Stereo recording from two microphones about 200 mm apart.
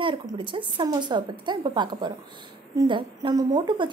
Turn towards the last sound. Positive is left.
turn(degrees=-20)  # may be behind; listen again after turning